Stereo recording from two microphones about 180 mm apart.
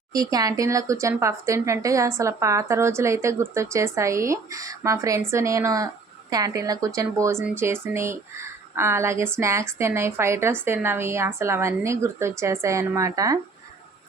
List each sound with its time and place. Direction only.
0.1 s speech: 20° right (ahead or behind)